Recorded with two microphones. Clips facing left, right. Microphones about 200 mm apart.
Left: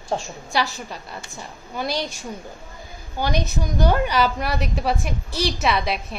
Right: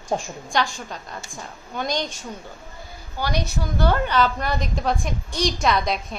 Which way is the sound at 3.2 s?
20° left (ahead or behind).